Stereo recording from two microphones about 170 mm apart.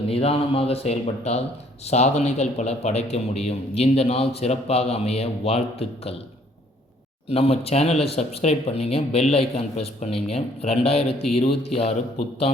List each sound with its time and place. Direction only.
0.1 s a man's voice: 35° left (ahead or behind)
7.3 s a man's voice: 35° left (ahead or behind)